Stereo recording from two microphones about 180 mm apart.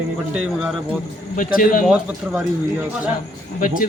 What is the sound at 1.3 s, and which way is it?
Speech, 50° left (ahead or behind).